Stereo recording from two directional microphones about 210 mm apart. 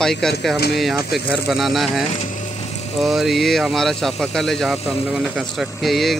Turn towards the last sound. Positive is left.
turn(degrees=0)  # may be behind; listen again after turning